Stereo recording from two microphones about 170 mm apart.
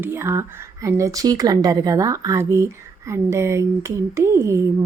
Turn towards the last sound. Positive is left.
turn(degrees=-15)  # may be behind; listen again after turning